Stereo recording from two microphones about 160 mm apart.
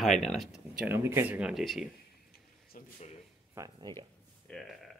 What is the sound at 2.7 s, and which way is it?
Speech, 55° left (ahead or behind).